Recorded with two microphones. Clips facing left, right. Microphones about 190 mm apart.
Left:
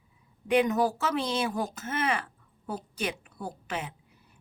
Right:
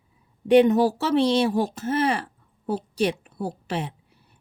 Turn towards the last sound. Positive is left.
turn(degrees=-35)  # may be behind; listen again after turning